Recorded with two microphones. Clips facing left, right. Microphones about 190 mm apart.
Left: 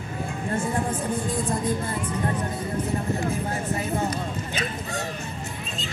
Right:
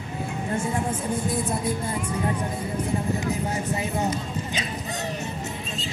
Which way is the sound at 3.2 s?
20° right (ahead or behind).